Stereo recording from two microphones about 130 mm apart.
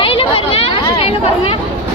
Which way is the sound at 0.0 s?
45° left (ahead or behind).